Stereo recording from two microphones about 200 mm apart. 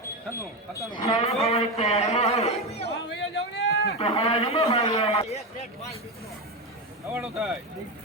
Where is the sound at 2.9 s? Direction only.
60° left (ahead or behind).